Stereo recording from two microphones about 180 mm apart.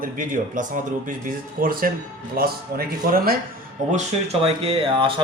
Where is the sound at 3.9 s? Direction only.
40° right (ahead or behind).